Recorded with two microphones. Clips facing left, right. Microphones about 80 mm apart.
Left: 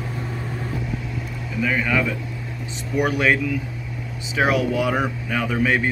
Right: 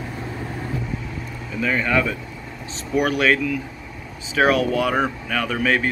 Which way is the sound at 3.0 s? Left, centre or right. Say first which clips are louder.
Even; centre.